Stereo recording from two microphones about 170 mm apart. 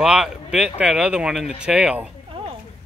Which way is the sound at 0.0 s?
5° right (ahead or behind).